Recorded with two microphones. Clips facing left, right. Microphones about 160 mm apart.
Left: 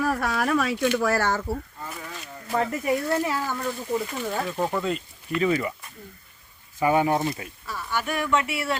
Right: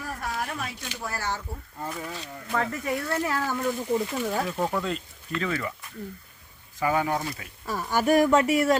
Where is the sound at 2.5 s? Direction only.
20° left (ahead or behind).